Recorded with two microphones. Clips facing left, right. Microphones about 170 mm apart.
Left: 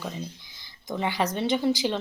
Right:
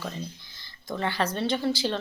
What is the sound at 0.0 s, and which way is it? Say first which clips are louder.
Speech: left 1 dB; 15° left (ahead or behind).